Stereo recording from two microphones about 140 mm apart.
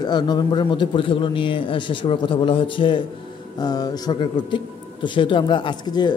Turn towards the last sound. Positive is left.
turn(degrees=30)  # may be behind; listen again after turning